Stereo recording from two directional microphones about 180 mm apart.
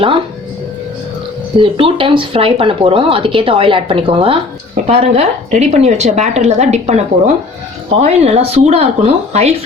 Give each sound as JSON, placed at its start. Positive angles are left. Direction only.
{"t": 1.5, "sound": "a woman's voice", "side_deg": -30}